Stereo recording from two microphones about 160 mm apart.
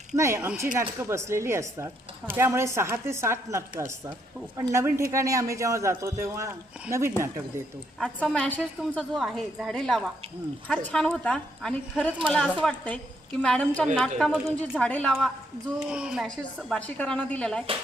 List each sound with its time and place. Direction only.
0.2 s speech: 15° right (ahead or behind)
7.9 s a woman's voice: 5° left (ahead or behind)
15.9 s a woman's voice: 5° right (ahead or behind)